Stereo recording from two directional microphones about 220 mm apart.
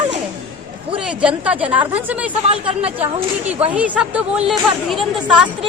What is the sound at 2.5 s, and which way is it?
Speech, 25° right (ahead or behind).